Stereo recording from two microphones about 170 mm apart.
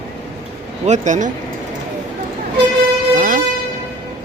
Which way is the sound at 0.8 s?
45° right (ahead or behind).